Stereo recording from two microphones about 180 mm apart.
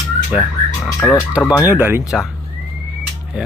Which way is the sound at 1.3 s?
10° right (ahead or behind).